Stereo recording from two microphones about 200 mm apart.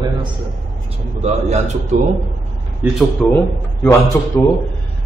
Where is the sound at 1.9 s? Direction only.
35° right (ahead or behind).